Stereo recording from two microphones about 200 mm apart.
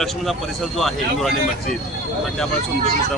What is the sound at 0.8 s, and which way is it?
Speech, centre (ahead or behind).